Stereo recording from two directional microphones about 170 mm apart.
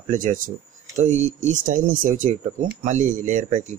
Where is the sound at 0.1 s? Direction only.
50° right (ahead or behind).